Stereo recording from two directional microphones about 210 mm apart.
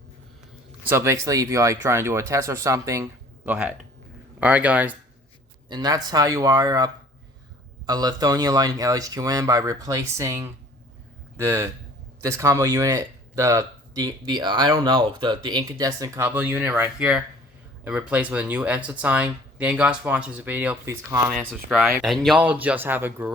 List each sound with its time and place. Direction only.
0.9 s speech: 10° right (ahead or behind)
5.6 s speech: 20° right (ahead or behind)
21.2 s speech: centre (ahead or behind)